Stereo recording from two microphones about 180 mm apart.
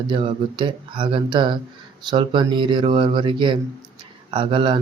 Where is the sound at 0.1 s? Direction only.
30° right (ahead or behind).